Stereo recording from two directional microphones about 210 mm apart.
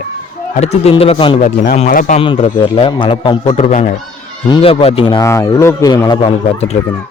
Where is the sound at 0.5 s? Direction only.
30° left (ahead or behind).